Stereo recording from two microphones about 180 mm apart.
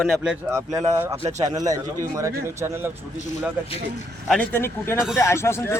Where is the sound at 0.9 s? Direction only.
15° right (ahead or behind).